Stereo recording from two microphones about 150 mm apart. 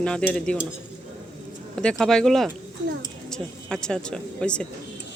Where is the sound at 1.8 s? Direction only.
5° left (ahead or behind).